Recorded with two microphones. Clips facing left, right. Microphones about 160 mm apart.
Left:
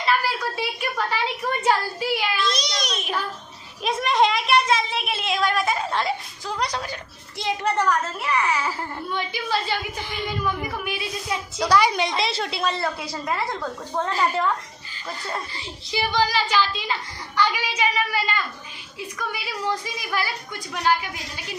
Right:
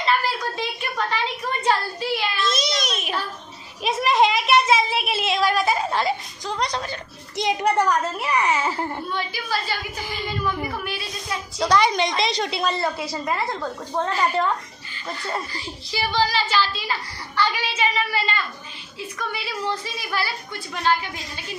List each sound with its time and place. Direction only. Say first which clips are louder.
0.0 s a sound: even; 10° left (ahead or behind)
2.4 s a sound: right 2 dB; 5° right (ahead or behind)
7.3 s a child's voice: right 3 dB; 15° right (ahead or behind)
9.1 s a woman's voice: left 1 dB; 20° left (ahead or behind)
10.8 s a woman's voice: left 1 dB; 15° left (ahead or behind); by 13.7 s 5° right (ahead or behind)
15.0 s a woman's voice: right 2 dB; centre (ahead or behind)
15.5 s speech: left 1 dB; 20° left (ahead or behind)